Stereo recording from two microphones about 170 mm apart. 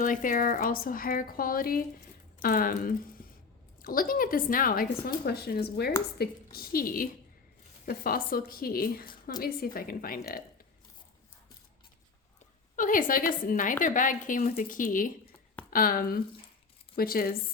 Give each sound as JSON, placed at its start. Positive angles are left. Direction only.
{"t": 0.0, "sound": "a woman's voice", "side_deg": 50}
{"t": 12.7, "sound": "a woman's voice", "side_deg": 50}